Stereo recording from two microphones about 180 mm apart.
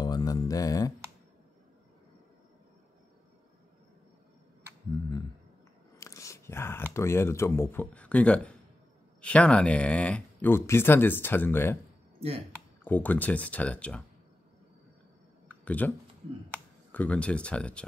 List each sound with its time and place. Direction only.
0.0 s a sound: 20° left (ahead or behind)
5.9 s speech: 15° left (ahead or behind)
12.8 s speech: 10° left (ahead or behind)
15.6 s speech: 10° left (ahead or behind)
16.9 s speech: 5° left (ahead or behind)